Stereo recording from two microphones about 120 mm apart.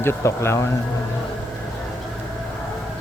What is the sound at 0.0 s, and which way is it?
Speech, 20° left (ahead or behind).